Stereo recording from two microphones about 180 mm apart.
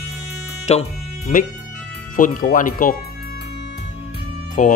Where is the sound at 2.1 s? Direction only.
50° left (ahead or behind).